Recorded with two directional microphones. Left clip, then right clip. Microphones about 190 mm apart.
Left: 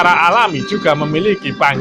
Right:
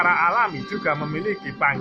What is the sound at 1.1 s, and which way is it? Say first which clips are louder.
Speech: left 11 dB; 50° left (ahead or behind).